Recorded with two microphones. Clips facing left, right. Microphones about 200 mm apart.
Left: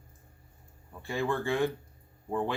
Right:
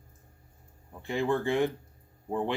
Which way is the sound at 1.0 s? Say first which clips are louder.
Right 3 dB; 20° right (ahead or behind).